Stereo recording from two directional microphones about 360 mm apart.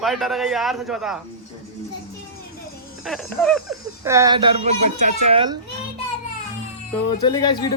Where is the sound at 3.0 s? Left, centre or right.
Centre.